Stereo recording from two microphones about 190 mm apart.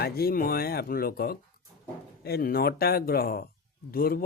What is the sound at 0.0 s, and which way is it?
Speech, 55° left (ahead or behind).